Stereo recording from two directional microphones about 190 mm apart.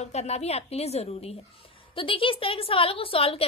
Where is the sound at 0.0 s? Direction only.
35° left (ahead or behind).